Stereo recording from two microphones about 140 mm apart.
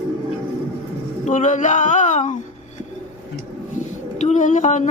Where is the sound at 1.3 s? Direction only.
65° left (ahead or behind).